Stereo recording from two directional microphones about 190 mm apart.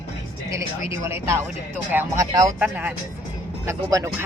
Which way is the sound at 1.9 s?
15° right (ahead or behind).